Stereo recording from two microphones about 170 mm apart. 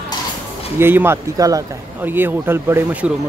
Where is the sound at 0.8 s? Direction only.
15° right (ahead or behind).